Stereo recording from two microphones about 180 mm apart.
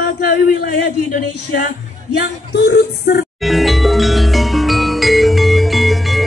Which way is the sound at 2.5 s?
65° left (ahead or behind).